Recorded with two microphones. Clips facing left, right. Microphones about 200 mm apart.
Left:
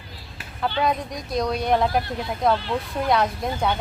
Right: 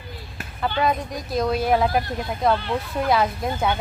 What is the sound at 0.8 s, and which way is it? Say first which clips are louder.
Speech: right 1 dB; centre (ahead or behind).